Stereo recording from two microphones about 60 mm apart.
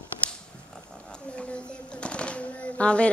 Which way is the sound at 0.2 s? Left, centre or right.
Left.